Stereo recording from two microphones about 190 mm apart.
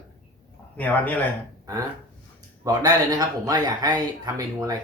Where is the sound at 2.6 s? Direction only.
20° right (ahead or behind).